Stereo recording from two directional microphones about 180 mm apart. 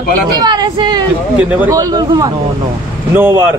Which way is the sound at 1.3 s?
10° right (ahead or behind).